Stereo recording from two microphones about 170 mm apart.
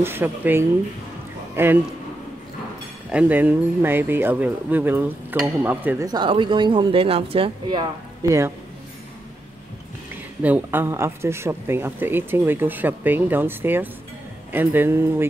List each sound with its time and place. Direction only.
0.0 s a man's voice: 10° right (ahead or behind)
3.1 s speech: 10° right (ahead or behind)
6.0 s speech: 25° right (ahead or behind)
10.4 s speech: 10° right (ahead or behind)